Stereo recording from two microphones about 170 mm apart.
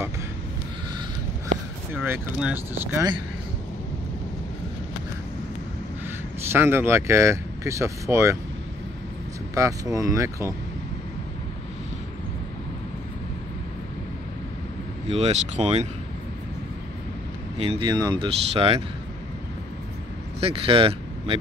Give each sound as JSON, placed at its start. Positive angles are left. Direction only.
{"t": 2.0, "sound": "speech", "side_deg": -10}
{"t": 6.5, "sound": "speech", "side_deg": -15}
{"t": 9.6, "sound": "speech", "side_deg": -20}
{"t": 15.0, "sound": "speech", "side_deg": -40}
{"t": 17.6, "sound": "speech", "side_deg": -35}
{"t": 17.8, "sound": "speech", "side_deg": -25}
{"t": 20.3, "sound": "speech", "side_deg": -35}